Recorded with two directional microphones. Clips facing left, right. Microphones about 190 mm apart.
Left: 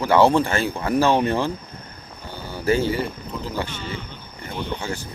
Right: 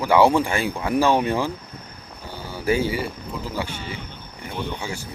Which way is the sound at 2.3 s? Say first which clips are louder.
Left 1 dB; 10° right (ahead or behind).